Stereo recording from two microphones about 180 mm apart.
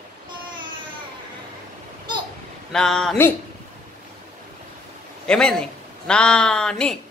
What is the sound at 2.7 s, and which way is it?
Speech, 5° left (ahead or behind).